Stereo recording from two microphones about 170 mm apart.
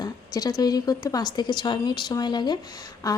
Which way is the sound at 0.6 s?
25° left (ahead or behind).